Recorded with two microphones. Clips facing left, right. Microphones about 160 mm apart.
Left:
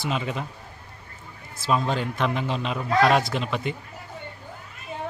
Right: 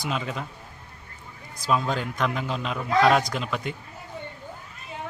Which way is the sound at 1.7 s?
Centre (ahead or behind).